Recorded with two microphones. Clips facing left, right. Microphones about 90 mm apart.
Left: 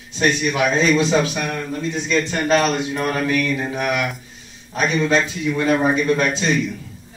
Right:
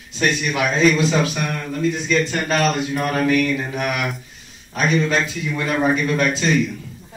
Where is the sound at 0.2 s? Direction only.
30° left (ahead or behind).